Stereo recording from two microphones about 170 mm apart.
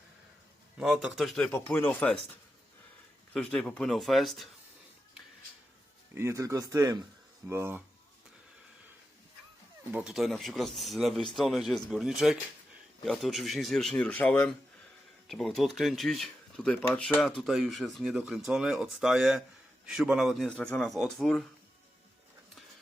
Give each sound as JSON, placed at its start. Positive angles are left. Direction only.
{"t": 0.8, "sound": "speech", "side_deg": -5}
{"t": 1.5, "sound": "speech", "side_deg": 10}
{"t": 3.3, "sound": "speech", "side_deg": 5}
{"t": 6.1, "sound": "speech", "side_deg": -15}
{"t": 9.9, "sound": "speech", "side_deg": -5}